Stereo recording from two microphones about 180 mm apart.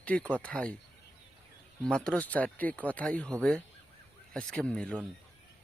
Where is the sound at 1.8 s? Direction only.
5° left (ahead or behind).